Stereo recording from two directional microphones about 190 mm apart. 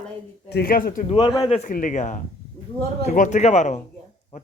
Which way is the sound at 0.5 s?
50° left (ahead or behind).